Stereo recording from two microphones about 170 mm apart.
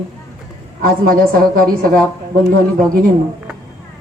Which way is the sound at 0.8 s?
60° right (ahead or behind).